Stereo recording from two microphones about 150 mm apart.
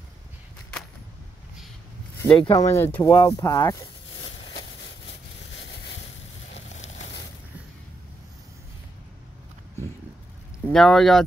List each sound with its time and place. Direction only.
2.1 s speech: 15° left (ahead or behind)
3.1 s speech: 25° left (ahead or behind)
10.7 s speech: 5° left (ahead or behind)